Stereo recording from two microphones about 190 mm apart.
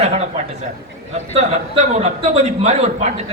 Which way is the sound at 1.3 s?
35° right (ahead or behind).